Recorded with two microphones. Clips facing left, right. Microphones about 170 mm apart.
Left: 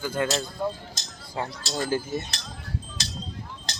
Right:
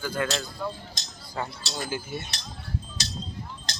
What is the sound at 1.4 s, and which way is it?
Speech, 20° left (ahead or behind).